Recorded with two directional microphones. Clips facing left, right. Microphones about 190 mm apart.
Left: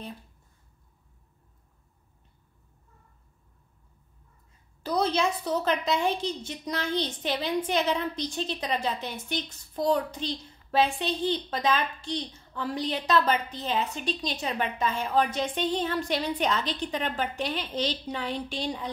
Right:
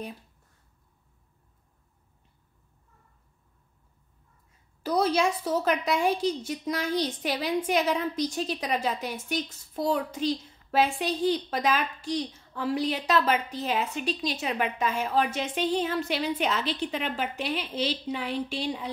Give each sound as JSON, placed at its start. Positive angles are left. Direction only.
{"t": 4.8, "sound": "a woman's voice", "side_deg": -10}